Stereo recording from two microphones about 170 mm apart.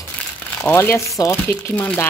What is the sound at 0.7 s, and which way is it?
Speech, 15° left (ahead or behind).